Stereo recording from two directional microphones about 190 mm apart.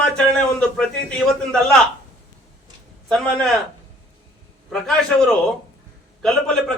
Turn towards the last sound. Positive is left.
turn(degrees=5)  # may be behind; listen again after turning